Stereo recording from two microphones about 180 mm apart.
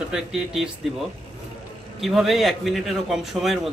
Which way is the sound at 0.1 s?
5° right (ahead or behind).